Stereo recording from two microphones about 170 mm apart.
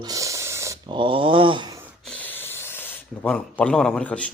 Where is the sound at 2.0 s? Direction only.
10° left (ahead or behind).